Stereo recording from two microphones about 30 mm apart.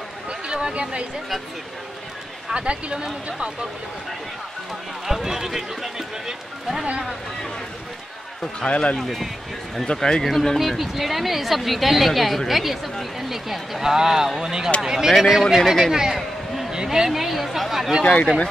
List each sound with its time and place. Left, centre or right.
0.3 s a sound: right
2.5 s speech: right
5.0 s speech: centre
8.6 s speech: left
8.9 s a woman's voice: centre
9.9 s speech: left
10.2 s speech: centre
10.8 s a woman's voice: centre; by 14.7 s right
15.0 s a woman's voice: centre
15.9 s a man's voice: right
18.0 s speech: left